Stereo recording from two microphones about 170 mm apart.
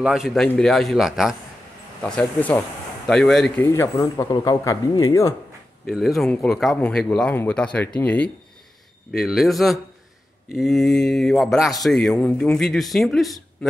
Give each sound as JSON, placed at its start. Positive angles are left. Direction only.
{"t": 0.0, "sound": "speech", "side_deg": -5}
{"t": 3.6, "sound": "speech", "side_deg": 15}
{"t": 5.9, "sound": "speech", "side_deg": 0}